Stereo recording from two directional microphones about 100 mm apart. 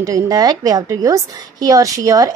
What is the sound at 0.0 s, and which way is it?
A woman's voice, 40° right (ahead or behind).